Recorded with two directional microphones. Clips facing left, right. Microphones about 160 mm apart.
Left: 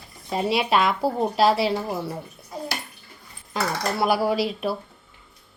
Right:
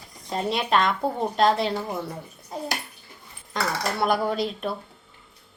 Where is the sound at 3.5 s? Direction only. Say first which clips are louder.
Left 1 dB; 5° left (ahead or behind).